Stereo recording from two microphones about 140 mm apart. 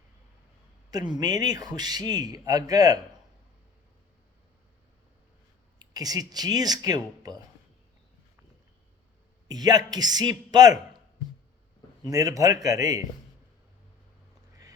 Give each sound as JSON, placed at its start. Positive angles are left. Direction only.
{"t": 0.9, "sound": "a man's voice", "side_deg": -30}
{"t": 5.8, "sound": "a man's voice", "side_deg": -25}
{"t": 9.5, "sound": "a man's voice", "side_deg": -30}
{"t": 12.1, "sound": "a man's voice", "side_deg": -25}